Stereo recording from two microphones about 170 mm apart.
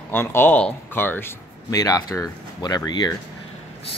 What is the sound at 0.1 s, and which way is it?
Speech, 15° left (ahead or behind).